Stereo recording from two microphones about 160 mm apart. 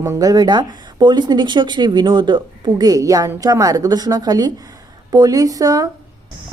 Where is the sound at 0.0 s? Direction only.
20° right (ahead or behind).